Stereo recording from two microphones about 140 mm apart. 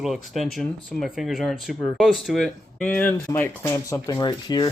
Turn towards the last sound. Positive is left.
turn(degrees=30)  # may be behind; listen again after turning